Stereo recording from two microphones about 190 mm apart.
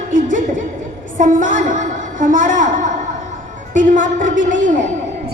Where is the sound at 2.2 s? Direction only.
45° right (ahead or behind).